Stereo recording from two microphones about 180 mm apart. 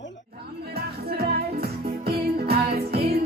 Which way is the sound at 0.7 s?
60° right (ahead or behind).